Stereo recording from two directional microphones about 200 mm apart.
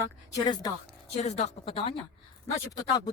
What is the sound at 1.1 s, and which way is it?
Speech, 35° left (ahead or behind).